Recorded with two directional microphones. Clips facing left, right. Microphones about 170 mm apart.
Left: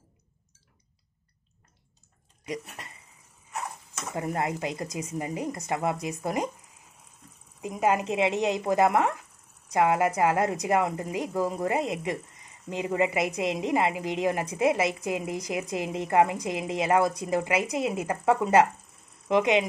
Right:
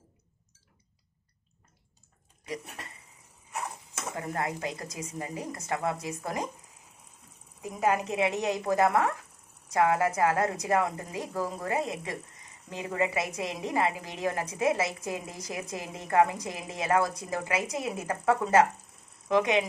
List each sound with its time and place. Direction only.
4.1 s a woman's voice: 20° left (ahead or behind)
7.6 s a woman's voice: 20° left (ahead or behind)